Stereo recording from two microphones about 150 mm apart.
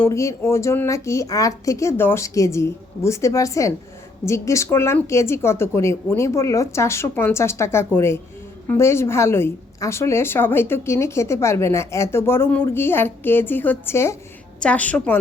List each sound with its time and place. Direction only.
0.0 s a woman's voice: 20° left (ahead or behind)